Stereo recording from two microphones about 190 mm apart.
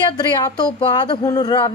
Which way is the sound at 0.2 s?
20° left (ahead or behind).